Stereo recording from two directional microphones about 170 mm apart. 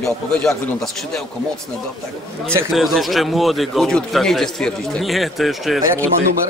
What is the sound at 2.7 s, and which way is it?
Speech, centre (ahead or behind).